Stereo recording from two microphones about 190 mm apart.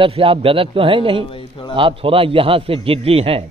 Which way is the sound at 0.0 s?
30° right (ahead or behind).